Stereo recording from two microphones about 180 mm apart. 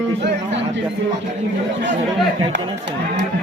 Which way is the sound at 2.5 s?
85° right.